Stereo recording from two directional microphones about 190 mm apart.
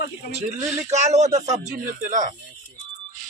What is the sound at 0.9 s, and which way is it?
Speech, 35° right (ahead or behind).